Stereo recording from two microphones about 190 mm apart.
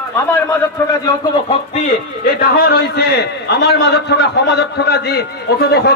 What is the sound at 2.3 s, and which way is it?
A man's voice, 50° left (ahead or behind).